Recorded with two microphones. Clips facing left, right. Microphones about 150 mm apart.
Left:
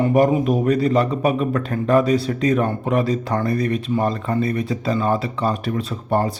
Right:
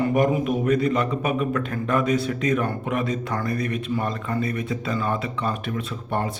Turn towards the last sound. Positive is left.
turn(degrees=35)  # may be behind; listen again after turning